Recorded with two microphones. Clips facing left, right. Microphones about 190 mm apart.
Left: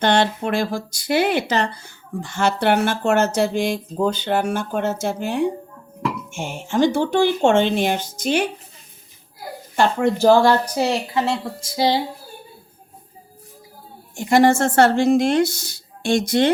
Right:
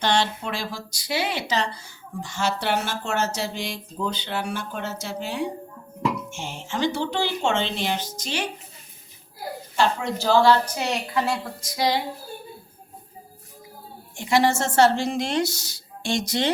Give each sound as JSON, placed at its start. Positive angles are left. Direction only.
{"t": 0.0, "sound": "speech", "side_deg": 55}
{"t": 9.7, "sound": "speech", "side_deg": 55}
{"t": 10.8, "sound": "speech", "side_deg": 30}
{"t": 14.2, "sound": "speech", "side_deg": 50}